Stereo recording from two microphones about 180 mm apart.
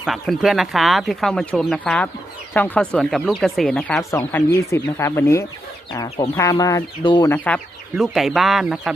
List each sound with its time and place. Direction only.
0.0 s speech: centre (ahead or behind); by 5.5 s 15° left (ahead or behind)
5.9 s speech: 25° left (ahead or behind)
7.3 s speech: 5° left (ahead or behind)